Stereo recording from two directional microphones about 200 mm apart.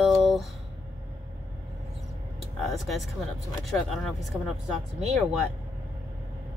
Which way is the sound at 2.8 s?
Centre (ahead or behind).